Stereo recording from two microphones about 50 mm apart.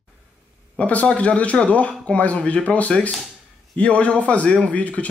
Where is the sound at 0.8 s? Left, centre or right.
Left.